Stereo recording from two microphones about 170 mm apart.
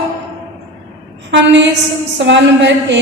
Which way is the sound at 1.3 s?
90° right.